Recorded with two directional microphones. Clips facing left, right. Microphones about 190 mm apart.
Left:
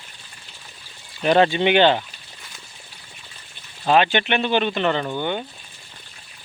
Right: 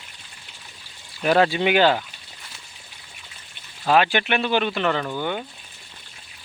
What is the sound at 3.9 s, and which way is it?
Speech, 5° right (ahead or behind).